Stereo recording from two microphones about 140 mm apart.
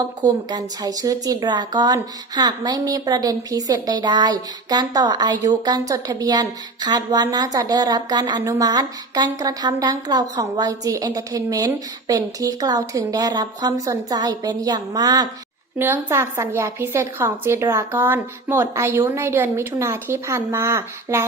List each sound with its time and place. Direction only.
0.0 s a woman's voice: 30° right (ahead or behind)
15.8 s a woman's voice: 15° right (ahead or behind)